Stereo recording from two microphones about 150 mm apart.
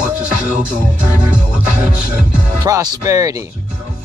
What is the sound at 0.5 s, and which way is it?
Music, 10° right (ahead or behind).